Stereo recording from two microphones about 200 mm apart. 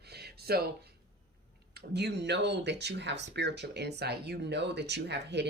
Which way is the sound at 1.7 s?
55° right (ahead or behind).